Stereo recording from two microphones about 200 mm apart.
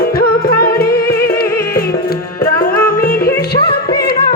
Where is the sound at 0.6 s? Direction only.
50° left (ahead or behind).